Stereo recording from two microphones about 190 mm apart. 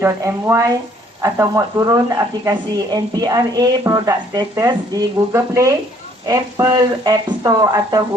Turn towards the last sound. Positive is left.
turn(degrees=-20)  # may be behind; listen again after turning